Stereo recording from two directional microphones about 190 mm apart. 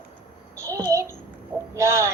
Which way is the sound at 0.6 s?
15° right (ahead or behind).